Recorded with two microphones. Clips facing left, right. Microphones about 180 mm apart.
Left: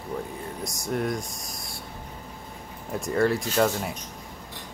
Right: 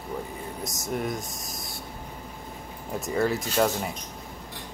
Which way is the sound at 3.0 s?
Centre (ahead or behind).